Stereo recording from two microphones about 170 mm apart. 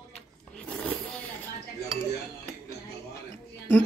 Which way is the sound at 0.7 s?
5° left (ahead or behind).